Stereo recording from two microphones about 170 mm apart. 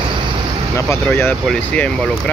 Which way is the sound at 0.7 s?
15° left (ahead or behind).